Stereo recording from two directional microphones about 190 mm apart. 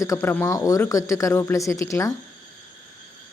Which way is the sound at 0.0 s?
15° left (ahead or behind).